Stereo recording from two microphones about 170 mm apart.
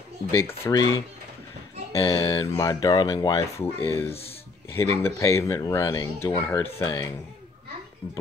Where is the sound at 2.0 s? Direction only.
25° left (ahead or behind).